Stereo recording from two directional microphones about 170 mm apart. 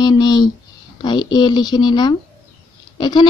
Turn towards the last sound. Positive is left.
turn(degrees=25)  # may be behind; listen again after turning